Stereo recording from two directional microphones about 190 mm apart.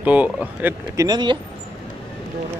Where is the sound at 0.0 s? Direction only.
10° right (ahead or behind).